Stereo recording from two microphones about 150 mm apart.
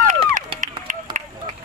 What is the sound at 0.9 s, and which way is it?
Run, 60° right (ahead or behind).